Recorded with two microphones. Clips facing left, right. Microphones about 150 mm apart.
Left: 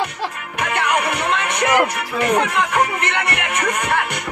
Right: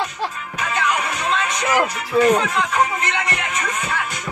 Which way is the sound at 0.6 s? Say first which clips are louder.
Left 2 dB; 65° left (ahead or behind).